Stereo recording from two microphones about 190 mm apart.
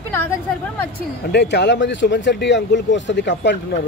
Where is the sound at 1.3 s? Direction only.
65° left (ahead or behind).